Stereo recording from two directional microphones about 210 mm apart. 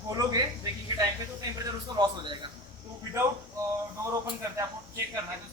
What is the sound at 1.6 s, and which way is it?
Speech, 20° right (ahead or behind).